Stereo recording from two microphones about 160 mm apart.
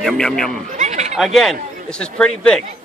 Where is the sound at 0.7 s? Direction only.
45° right (ahead or behind).